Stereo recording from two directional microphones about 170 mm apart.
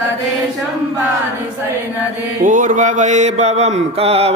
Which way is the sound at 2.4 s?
50° right (ahead or behind).